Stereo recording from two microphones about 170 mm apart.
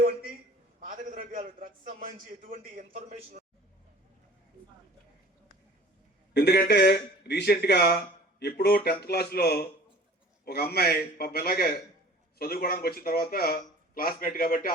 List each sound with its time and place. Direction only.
0.9 s a man's voice: 50° right (ahead or behind)
2.9 s a man's voice: 40° right (ahead or behind)
6.3 s a man's voice: 75° left (ahead or behind); by 14.7 s 55° left (ahead or behind)